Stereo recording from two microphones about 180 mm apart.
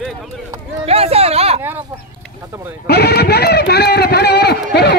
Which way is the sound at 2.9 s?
65° left (ahead or behind).